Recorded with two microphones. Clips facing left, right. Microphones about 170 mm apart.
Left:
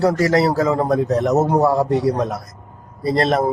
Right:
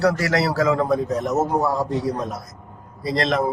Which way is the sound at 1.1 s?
70° left (ahead or behind).